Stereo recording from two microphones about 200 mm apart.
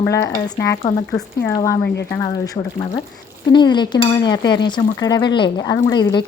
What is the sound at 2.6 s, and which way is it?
Dishes, 25° left (ahead or behind).